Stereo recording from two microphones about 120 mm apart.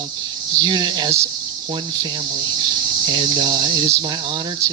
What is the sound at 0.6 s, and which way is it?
Speech, 35° right (ahead or behind).